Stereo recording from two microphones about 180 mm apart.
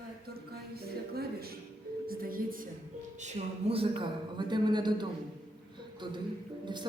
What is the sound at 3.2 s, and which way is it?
Speech, 35° right (ahead or behind).